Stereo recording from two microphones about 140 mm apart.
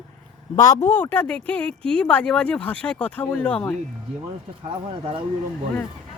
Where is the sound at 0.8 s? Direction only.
10° left (ahead or behind).